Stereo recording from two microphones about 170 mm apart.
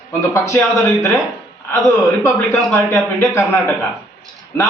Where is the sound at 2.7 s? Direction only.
15° left (ahead or behind).